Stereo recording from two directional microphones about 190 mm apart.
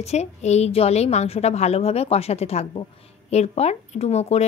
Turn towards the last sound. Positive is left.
turn(degrees=35)  # may be behind; listen again after turning